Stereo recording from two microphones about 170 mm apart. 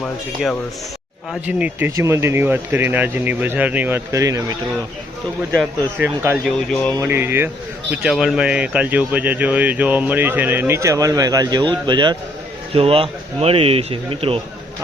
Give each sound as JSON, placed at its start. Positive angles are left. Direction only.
{"t": 1.3, "sound": "speech", "side_deg": -10}
{"t": 6.0, "sound": "speech", "side_deg": -5}
{"t": 6.9, "sound": "speech", "side_deg": -15}